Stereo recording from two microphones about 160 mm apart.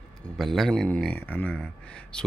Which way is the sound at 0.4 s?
Centre (ahead or behind).